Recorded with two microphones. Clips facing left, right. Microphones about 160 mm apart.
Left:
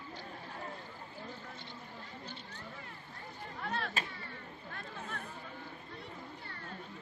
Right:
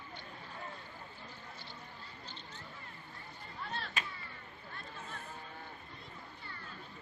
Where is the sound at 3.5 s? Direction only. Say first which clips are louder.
Left 4 dB; 60° left (ahead or behind).